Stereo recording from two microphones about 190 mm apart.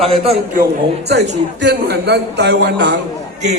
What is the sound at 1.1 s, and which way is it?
A woman's voice, 65° right (ahead or behind).